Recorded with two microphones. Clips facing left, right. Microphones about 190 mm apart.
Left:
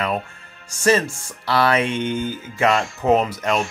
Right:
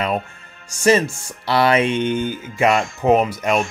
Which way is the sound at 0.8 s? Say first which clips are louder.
Right 2 dB; 20° right (ahead or behind).